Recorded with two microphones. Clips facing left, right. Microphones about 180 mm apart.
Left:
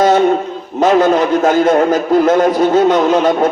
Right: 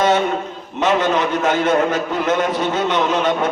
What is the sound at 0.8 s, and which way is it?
A man's voice, 35° left (ahead or behind).